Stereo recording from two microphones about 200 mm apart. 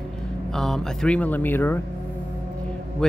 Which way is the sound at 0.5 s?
Centre (ahead or behind).